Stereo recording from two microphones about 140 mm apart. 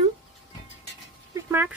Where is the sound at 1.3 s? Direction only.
15° right (ahead or behind).